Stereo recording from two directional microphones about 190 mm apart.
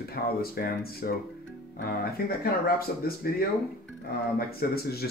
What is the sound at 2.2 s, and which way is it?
Speech, 50° left (ahead or behind).